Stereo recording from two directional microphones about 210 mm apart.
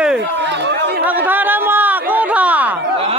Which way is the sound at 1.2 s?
10° right (ahead or behind).